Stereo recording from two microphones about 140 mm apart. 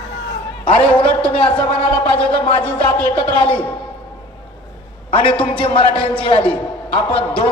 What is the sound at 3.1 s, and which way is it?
Speech, 40° left (ahead or behind).